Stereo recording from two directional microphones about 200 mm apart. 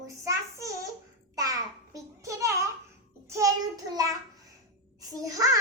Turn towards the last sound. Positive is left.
turn(degrees=-15)  # may be behind; listen again after turning